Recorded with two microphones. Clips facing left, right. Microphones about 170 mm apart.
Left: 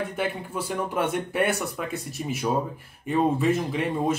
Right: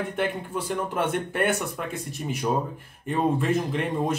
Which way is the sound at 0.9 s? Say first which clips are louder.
Left 2 dB; 5° left (ahead or behind).